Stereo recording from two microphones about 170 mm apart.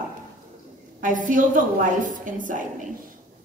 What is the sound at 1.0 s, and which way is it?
A woman's voice, 50° right (ahead or behind).